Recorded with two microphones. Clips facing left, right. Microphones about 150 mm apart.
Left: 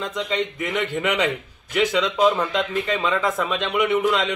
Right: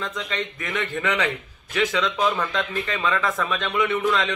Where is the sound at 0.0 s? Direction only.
20° left (ahead or behind).